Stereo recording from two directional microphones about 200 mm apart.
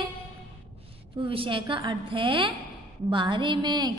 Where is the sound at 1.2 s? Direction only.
25° right (ahead or behind).